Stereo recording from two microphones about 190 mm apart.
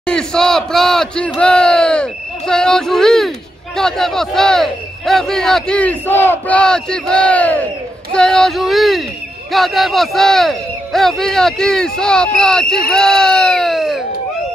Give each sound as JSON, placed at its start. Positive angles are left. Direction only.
{"t": 0.0, "sound": "speech", "side_deg": 5}